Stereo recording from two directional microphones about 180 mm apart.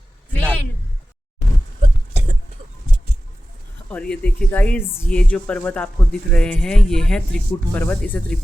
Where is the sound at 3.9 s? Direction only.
5° left (ahead or behind).